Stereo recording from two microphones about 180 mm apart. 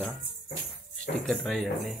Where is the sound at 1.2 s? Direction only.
Centre (ahead or behind).